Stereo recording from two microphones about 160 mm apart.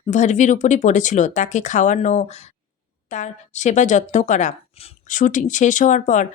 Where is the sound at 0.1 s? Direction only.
50° left (ahead or behind).